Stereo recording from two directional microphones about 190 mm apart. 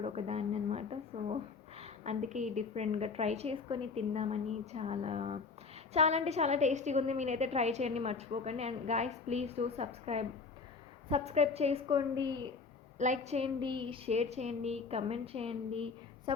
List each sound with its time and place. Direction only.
0.0 s speech: 35° right (ahead or behind)
13.0 s speech: 35° right (ahead or behind)